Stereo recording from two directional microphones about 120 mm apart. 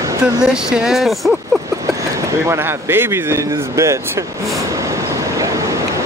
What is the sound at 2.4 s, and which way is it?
Speech, 20° right (ahead or behind).